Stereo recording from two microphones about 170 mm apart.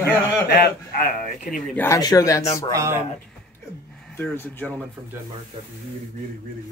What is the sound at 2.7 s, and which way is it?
Speech, 20° right (ahead or behind).